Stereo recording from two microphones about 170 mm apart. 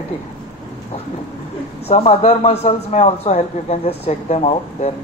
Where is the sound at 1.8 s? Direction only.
40° left (ahead or behind).